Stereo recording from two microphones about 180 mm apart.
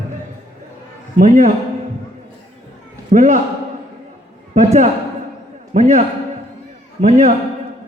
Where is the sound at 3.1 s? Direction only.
45° right (ahead or behind).